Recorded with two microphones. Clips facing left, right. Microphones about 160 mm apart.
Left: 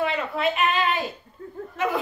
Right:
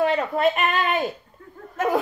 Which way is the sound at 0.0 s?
45° right (ahead or behind).